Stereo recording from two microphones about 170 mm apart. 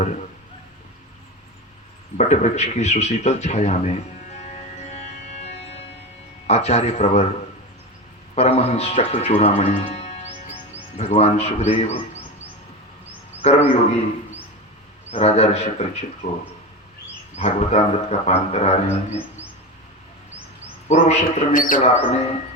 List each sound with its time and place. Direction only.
2.1 s a man's voice: 40° left (ahead or behind)
6.5 s speech: 40° left (ahead or behind)
8.4 s speech: 35° left (ahead or behind)
13.4 s speech: 40° left (ahead or behind)
15.1 s speech: 40° left (ahead or behind)
17.3 s speech: 40° left (ahead or behind)
20.8 s speech: 40° left (ahead or behind)